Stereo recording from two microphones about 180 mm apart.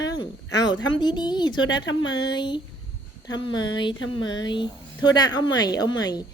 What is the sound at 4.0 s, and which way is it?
Speech, 90° left.